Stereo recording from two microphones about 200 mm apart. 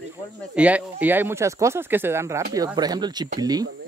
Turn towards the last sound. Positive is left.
turn(degrees=-20)  # may be behind; listen again after turning